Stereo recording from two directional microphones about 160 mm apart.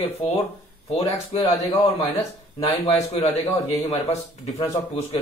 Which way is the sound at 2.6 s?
35° left (ahead or behind).